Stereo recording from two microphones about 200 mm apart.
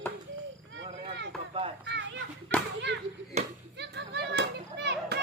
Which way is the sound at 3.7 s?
55° right (ahead or behind).